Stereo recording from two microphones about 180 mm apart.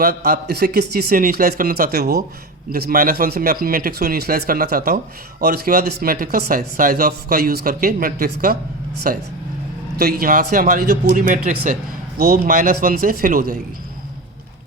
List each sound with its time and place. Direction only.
0.0 s speech: 60° right (ahead or behind)